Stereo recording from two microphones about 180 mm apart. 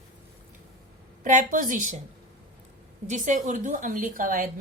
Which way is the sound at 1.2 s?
45° right (ahead or behind).